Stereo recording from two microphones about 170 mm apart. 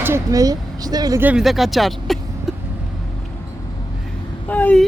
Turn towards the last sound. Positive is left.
turn(degrees=10)  # may be behind; listen again after turning